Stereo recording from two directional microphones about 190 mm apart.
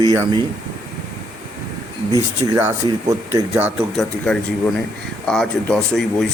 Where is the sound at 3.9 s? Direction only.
5° left (ahead or behind).